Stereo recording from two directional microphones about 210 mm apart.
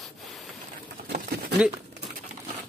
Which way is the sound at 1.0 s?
45° right (ahead or behind).